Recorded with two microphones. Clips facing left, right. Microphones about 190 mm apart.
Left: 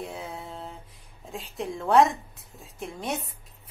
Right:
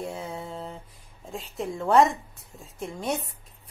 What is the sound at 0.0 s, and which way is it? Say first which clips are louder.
Mantra: right 3 dB; centre (ahead or behind).